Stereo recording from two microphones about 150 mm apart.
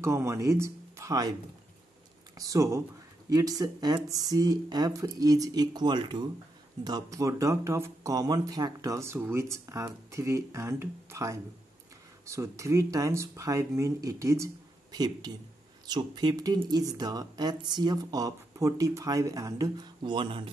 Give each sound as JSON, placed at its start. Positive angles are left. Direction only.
{"t": 0.0, "sound": "speech", "side_deg": -20}
{"t": 2.3, "sound": "speech", "side_deg": -25}